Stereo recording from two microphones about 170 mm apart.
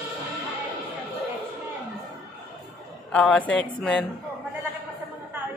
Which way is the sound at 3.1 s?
5° left (ahead or behind).